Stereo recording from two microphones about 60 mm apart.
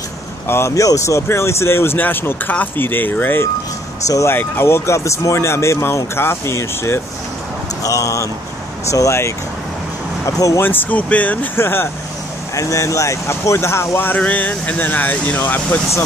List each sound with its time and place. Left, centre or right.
0.5 s speech: left
0.7 s speech: left
7.8 s speech: left
10.6 s speech: left
11.5 s speech: left
12.5 s speech: left
14.1 s speech: left